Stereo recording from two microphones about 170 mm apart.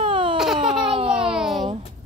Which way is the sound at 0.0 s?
30° right (ahead or behind).